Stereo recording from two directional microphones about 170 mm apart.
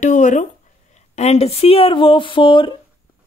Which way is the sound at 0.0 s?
45° left (ahead or behind).